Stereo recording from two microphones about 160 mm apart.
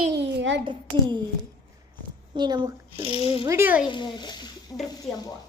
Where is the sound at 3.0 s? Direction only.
35° left (ahead or behind).